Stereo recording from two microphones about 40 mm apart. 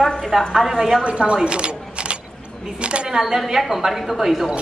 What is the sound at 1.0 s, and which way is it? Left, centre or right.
Speech, right.